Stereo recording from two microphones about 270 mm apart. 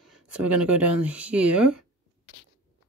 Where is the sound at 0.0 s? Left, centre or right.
Centre.